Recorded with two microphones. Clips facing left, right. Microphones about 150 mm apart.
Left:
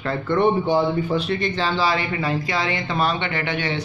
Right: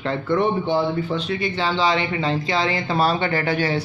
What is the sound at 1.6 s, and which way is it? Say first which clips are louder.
Speech: right 3 dB; 20° right (ahead or behind).